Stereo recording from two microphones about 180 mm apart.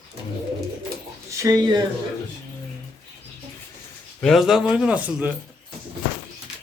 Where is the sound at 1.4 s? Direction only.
20° right (ahead or behind).